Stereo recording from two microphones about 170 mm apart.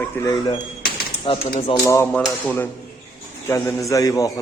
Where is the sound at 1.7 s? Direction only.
20° left (ahead or behind).